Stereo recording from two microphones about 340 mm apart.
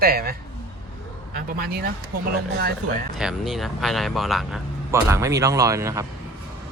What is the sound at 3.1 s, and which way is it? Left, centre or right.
Speech, centre.